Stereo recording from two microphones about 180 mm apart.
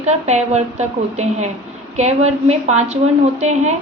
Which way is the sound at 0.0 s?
40° right (ahead or behind).